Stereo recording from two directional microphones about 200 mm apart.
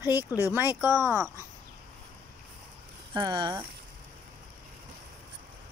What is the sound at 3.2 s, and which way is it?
Speech, 20° right (ahead or behind).